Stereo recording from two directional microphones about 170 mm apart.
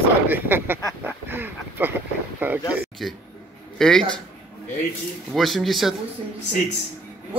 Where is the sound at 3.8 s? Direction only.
5° left (ahead or behind).